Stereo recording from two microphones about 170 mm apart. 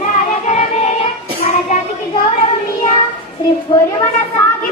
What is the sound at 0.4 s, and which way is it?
Music, 45° left (ahead or behind).